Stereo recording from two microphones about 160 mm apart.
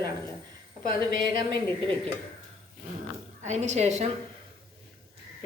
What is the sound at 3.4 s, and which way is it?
Speech, 45° right (ahead or behind).